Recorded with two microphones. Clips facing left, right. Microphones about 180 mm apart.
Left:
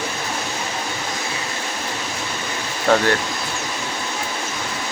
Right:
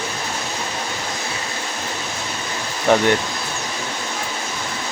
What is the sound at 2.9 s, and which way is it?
Speech, 15° right (ahead or behind).